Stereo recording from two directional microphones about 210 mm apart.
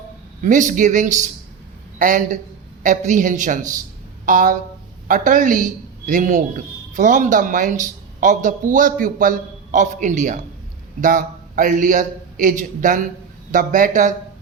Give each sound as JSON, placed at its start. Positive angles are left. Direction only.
{"t": 0.4, "sound": "a man's voice", "side_deg": -40}